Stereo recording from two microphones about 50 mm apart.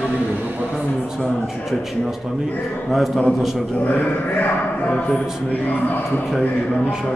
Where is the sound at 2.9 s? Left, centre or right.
Centre.